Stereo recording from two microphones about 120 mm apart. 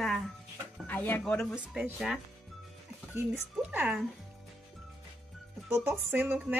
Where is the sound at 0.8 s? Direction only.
15° left (ahead or behind).